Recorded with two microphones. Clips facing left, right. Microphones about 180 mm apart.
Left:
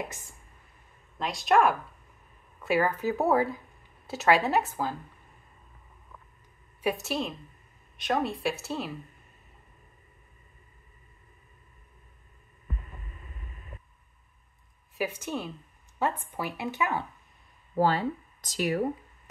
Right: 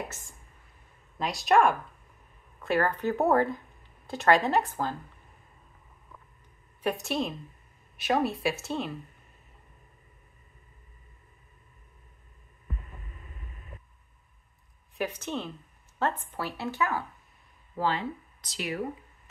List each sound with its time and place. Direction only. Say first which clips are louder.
1.1 s a woman's voice: even; centre (ahead or behind)
6.8 s a woman's voice: even; 5° left (ahead or behind)
15.0 s speech: even; 10° left (ahead or behind)
17.7 s speech: left 4 dB; 40° left (ahead or behind)